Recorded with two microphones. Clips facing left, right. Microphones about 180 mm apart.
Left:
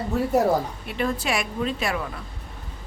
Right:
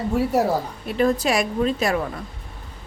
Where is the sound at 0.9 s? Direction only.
40° right (ahead or behind).